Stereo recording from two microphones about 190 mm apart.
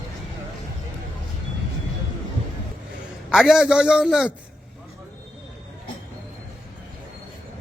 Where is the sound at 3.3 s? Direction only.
5° right (ahead or behind).